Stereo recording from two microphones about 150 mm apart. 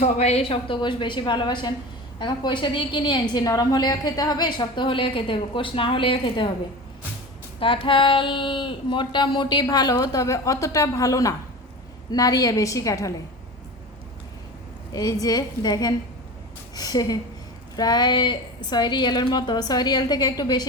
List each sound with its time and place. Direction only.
0.0 s a woman's voice: 45° left (ahead or behind)
7.6 s speech: 35° left (ahead or behind)
14.9 s speech: 25° left (ahead or behind)